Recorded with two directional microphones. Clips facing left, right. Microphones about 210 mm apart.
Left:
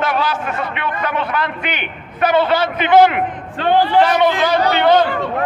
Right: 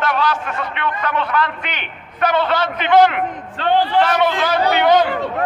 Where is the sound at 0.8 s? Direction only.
10° left (ahead or behind).